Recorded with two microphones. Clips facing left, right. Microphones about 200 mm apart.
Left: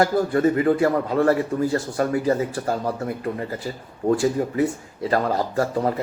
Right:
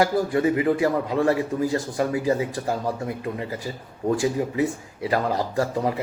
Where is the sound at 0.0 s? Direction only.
10° right (ahead or behind).